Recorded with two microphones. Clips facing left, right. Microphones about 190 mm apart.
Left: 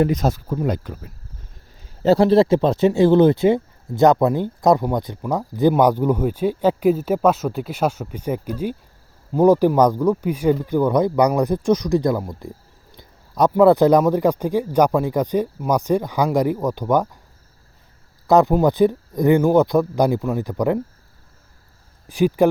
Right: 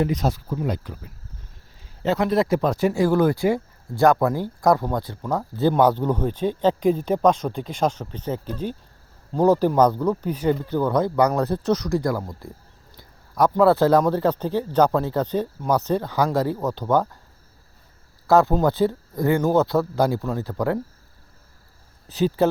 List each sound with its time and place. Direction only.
0.0 s speech: 45° left (ahead or behind)
2.0 s speech: 30° left (ahead or behind)
13.0 s a sound: 20° left (ahead or behind)
13.5 s speech: 15° left (ahead or behind)
18.3 s speech: 15° left (ahead or behind)
22.0 s speech: 10° left (ahead or behind)